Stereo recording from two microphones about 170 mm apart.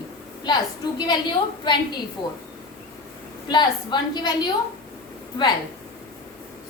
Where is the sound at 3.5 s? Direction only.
25° left (ahead or behind).